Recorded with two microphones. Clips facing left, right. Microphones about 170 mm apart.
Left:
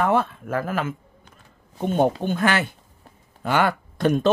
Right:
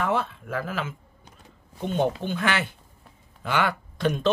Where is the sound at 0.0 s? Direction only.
50° left (ahead or behind).